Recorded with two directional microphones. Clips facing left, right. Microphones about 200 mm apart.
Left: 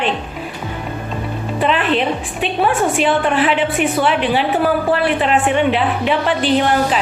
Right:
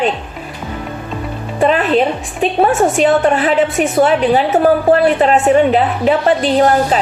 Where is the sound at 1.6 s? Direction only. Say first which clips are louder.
Right 5 dB; 40° right (ahead or behind).